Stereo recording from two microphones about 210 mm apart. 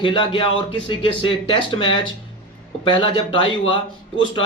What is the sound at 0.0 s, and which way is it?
Speech, 25° left (ahead or behind).